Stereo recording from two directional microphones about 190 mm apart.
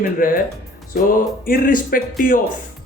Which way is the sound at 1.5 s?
45° left (ahead or behind).